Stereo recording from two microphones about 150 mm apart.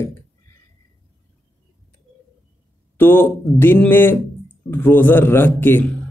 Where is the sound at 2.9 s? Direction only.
15° left (ahead or behind).